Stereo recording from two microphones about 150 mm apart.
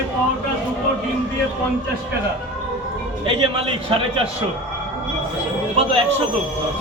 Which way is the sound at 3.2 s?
35° right (ahead or behind).